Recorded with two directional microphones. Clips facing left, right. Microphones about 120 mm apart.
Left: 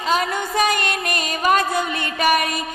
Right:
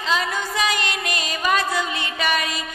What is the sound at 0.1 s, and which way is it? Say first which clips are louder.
Music: left 3 dB; 50° left (ahead or behind).